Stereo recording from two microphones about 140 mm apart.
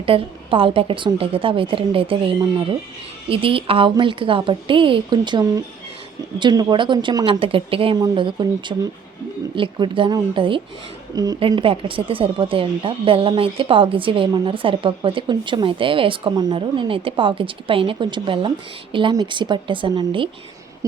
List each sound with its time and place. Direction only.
0.0 s speech: 40° right (ahead or behind)
11.1 s a woman's voice: 25° right (ahead or behind)
11.3 s speech: 40° right (ahead or behind)